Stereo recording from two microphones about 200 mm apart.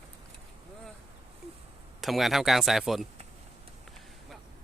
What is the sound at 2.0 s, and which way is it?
Speech, centre (ahead or behind).